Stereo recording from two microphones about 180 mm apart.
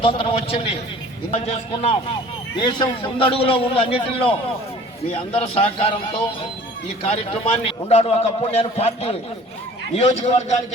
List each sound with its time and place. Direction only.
0.0 s a man's voice: 30° left (ahead or behind)